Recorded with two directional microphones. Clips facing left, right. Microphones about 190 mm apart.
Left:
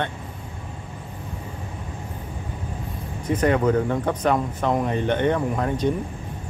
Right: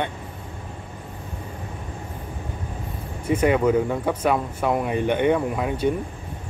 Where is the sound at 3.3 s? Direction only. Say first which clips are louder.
Right 1 dB; 10° right (ahead or behind).